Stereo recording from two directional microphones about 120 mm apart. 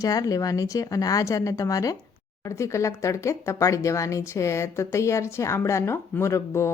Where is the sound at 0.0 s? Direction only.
30° left (ahead or behind).